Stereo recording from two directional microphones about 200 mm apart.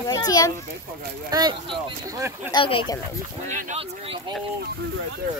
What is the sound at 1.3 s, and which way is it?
Speech, 20° right (ahead or behind).